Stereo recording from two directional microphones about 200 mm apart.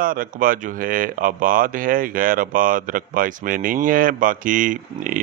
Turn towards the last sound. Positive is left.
turn(degrees=-40)  # may be behind; listen again after turning